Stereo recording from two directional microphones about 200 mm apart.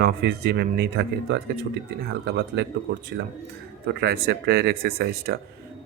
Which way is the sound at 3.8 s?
55° right (ahead or behind).